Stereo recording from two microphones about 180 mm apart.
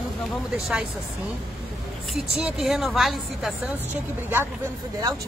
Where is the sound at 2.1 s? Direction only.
5° right (ahead or behind).